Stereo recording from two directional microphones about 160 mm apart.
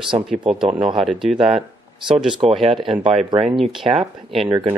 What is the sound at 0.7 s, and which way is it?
Speech, 40° right (ahead or behind).